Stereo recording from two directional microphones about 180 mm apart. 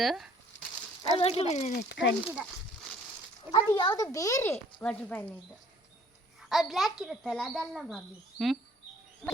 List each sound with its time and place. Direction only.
0.0 s speech: centre (ahead or behind)
1.2 s speech: 35° left (ahead or behind)
1.9 s speech: 85° left
3.5 s speech: 25° left (ahead or behind)
4.8 s speech: 5° left (ahead or behind)
6.5 s speech: centre (ahead or behind)